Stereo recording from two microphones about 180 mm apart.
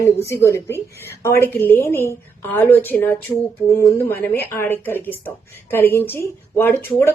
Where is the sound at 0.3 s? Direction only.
15° left (ahead or behind).